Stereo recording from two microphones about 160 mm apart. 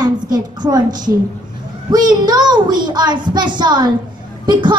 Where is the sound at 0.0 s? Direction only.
25° right (ahead or behind).